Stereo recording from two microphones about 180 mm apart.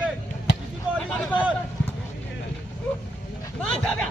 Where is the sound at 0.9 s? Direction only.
5° left (ahead or behind).